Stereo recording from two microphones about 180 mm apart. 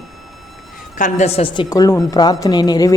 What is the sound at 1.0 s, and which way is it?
A woman's voice, 40° left (ahead or behind).